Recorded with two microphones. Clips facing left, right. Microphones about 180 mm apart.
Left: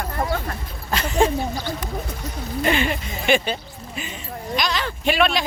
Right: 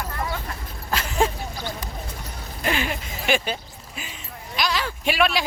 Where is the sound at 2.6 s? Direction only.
5° right (ahead or behind).